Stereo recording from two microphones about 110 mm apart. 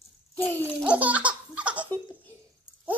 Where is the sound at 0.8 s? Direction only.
10° right (ahead or behind).